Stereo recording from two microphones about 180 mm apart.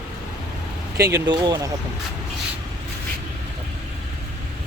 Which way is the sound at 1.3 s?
20° right (ahead or behind).